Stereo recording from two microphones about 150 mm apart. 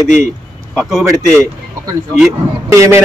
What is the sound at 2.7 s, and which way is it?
Speech, 20° right (ahead or behind).